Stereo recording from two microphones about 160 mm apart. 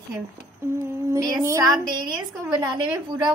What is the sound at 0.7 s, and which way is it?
A woman's voice, 15° right (ahead or behind).